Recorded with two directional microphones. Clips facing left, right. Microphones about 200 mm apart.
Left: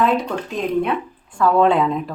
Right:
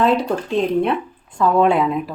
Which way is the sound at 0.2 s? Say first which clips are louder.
Right 5 dB; 30° right (ahead or behind).